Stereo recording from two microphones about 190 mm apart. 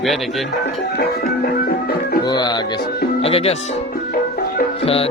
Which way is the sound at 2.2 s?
20° left (ahead or behind).